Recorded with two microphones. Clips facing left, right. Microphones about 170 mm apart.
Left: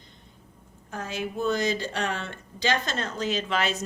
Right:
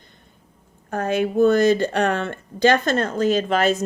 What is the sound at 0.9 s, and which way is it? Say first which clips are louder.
A woman's voice: right 11 dB; 60° right (ahead or behind).